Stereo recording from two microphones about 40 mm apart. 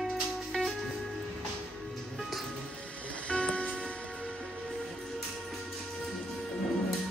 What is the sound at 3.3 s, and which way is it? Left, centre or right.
Music, left.